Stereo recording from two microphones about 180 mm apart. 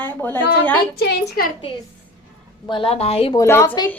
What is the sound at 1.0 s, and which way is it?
Speech, 55° left (ahead or behind).